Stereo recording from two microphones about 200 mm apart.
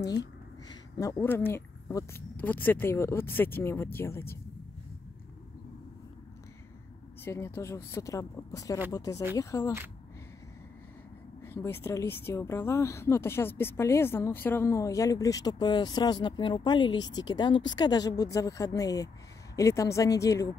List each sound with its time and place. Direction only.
0.7 s speech: 15° left (ahead or behind)
7.2 s speech: 10° left (ahead or behind)
11.4 s a woman's voice: 10° left (ahead or behind)